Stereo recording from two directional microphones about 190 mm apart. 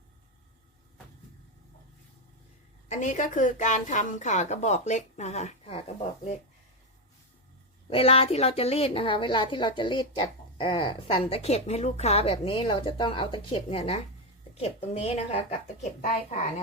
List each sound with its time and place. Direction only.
2.9 s a woman's voice: 40° left (ahead or behind)
7.9 s a woman's voice: 30° left (ahead or behind)